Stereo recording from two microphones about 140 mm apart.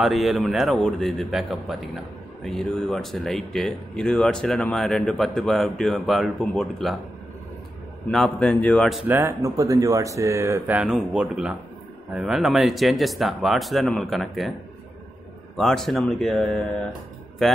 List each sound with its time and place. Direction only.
0.0 s speech: centre (ahead or behind)
8.1 s speech: 5° left (ahead or behind)
9.0 s speech: 15° right (ahead or behind)
9.4 s speech: 25° right (ahead or behind)
10.8 s speech: 10° right (ahead or behind)
15.5 s speech: centre (ahead or behind)